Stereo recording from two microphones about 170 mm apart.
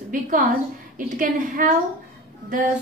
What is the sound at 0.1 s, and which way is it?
A woman's voice, 50° right (ahead or behind).